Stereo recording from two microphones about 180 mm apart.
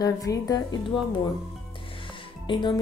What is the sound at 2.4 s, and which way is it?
Speech, 25° left (ahead or behind).